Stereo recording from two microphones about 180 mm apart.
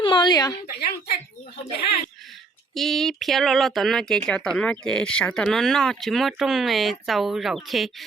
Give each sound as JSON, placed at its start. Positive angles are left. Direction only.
{"t": 0.0, "sound": "a sound", "side_deg": 25}
{"t": 0.8, "sound": "speech", "side_deg": 60}
{"t": 2.7, "sound": "speech", "side_deg": 0}